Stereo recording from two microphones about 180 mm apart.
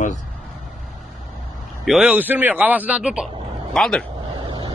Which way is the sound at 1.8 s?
5° right (ahead or behind).